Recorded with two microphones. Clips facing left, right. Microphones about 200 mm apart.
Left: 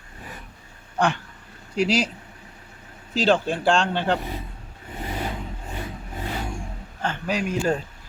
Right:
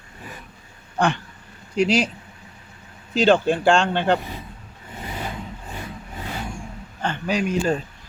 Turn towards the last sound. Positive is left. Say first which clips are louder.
# right 2 dB
turn(degrees=5)  # may be behind; listen again after turning